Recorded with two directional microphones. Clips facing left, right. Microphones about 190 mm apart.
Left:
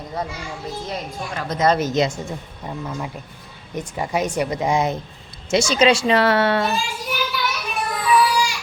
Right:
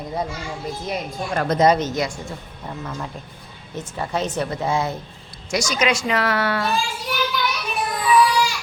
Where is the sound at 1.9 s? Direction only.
20° left (ahead or behind).